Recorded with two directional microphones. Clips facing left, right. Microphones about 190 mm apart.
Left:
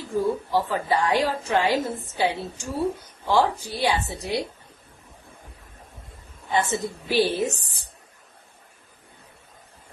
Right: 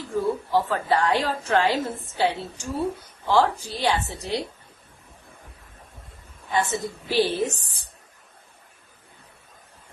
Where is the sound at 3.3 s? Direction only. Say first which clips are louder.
Right 1 dB; 15° left (ahead or behind).